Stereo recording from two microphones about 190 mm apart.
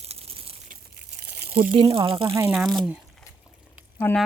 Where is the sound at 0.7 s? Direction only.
60° right (ahead or behind).